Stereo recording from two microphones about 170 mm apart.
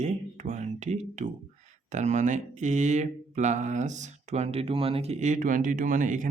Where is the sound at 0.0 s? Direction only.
45° right (ahead or behind).